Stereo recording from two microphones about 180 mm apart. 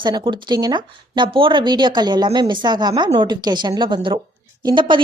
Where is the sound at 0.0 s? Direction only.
25° right (ahead or behind).